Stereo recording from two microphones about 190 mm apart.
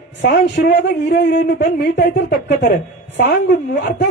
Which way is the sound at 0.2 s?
65° left (ahead or behind).